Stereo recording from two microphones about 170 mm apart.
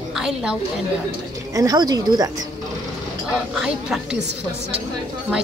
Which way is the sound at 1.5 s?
20° right (ahead or behind).